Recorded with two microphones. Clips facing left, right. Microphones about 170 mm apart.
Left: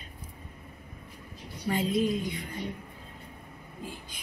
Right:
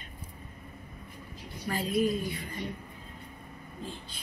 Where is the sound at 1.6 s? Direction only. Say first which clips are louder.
Left 1 dB; 25° left (ahead or behind).